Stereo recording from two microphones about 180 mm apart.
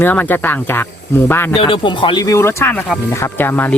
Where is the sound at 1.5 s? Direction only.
30° left (ahead or behind); by 3.7 s 10° left (ahead or behind).